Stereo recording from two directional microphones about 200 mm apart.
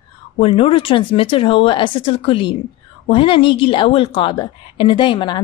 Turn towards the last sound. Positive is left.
turn(degrees=25)  # may be behind; listen again after turning